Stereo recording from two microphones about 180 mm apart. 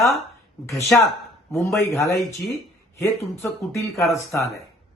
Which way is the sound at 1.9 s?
15° left (ahead or behind).